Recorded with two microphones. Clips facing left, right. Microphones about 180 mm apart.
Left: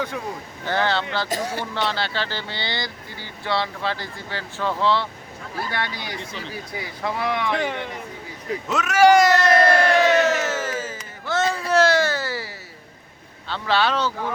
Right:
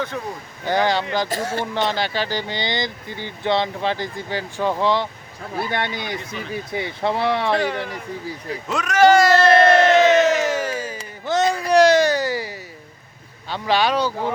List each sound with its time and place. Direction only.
0.6 s speech: 15° right (ahead or behind)
1.3 s speech: 15° left (ahead or behind)
1.7 s speech: 15° right (ahead or behind); by 7.6 s 35° right (ahead or behind)
8.6 s speech: centre (ahead or behind)
9.4 s a sound: 25° right (ahead or behind)
13.5 s speech: 15° right (ahead or behind)